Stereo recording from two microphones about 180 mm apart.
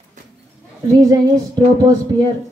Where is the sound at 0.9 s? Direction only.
20° right (ahead or behind).